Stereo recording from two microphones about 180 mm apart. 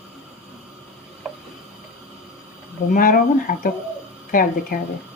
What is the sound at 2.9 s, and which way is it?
Speech, 50° left (ahead or behind).